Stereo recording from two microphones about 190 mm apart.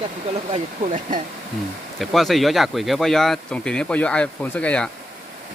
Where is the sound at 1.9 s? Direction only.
Centre (ahead or behind).